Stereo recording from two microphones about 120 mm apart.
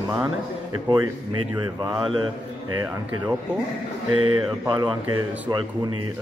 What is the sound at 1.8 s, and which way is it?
Speech, 40° right (ahead or behind).